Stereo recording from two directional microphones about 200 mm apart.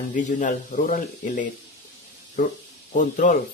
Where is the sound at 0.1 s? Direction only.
40° left (ahead or behind).